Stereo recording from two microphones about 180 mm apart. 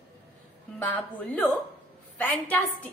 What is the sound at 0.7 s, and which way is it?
A woman's voice, 10° left (ahead or behind).